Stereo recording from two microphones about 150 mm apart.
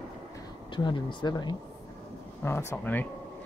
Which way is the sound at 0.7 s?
30° left (ahead or behind).